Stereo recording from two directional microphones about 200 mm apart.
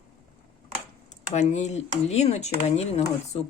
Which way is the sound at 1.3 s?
35° left (ahead or behind).